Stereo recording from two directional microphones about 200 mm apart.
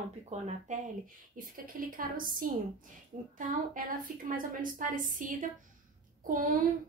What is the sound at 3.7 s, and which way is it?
A woman's voice, 45° right (ahead or behind).